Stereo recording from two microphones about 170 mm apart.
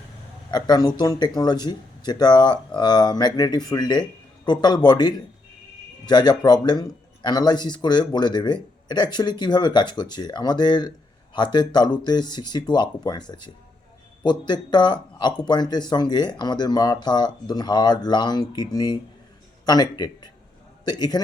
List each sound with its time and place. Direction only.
0.5 s speech: 25° left (ahead or behind)